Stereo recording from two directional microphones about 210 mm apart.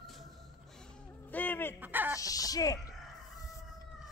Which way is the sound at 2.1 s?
15° left (ahead or behind).